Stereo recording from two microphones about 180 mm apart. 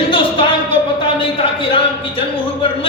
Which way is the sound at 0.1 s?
30° left (ahead or behind).